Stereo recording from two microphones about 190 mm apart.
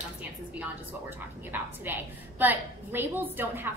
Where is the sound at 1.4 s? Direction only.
10° right (ahead or behind).